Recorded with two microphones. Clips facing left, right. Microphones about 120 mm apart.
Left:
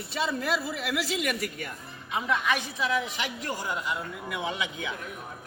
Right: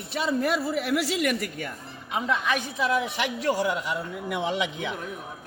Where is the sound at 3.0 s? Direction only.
75° right (ahead or behind); by 3.7 s 90° right.